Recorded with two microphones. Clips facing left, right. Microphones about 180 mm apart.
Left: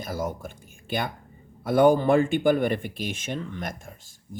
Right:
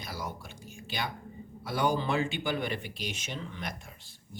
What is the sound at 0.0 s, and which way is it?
Speech, 50° left (ahead or behind).